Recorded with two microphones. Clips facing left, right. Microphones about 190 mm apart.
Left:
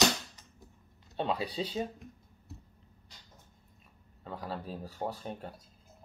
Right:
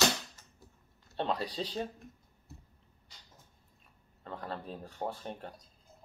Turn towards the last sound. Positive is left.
turn(degrees=0)  # may be behind; listen again after turning